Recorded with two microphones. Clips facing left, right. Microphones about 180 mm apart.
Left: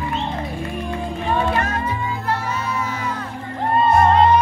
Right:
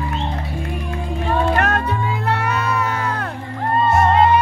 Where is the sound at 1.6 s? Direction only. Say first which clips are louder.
Right 3 dB; 65° right (ahead or behind).